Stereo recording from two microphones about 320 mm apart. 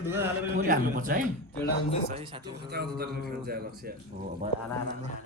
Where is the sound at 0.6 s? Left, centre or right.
Right.